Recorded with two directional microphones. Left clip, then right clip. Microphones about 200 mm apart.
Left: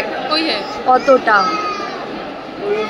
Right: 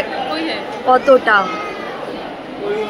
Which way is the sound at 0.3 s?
65° left (ahead or behind).